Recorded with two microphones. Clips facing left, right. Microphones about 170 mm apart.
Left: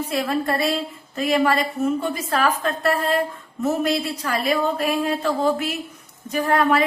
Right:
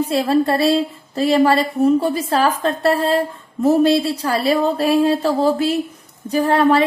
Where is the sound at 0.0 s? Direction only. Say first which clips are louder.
Right 7 dB; 30° right (ahead or behind).